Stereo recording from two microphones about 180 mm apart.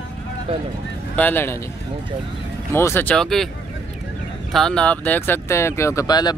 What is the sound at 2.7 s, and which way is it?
Speech, 15° left (ahead or behind).